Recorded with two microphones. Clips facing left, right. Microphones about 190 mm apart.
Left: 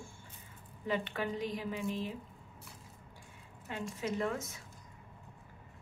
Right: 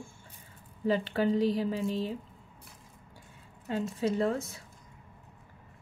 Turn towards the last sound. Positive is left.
turn(degrees=-30)  # may be behind; listen again after turning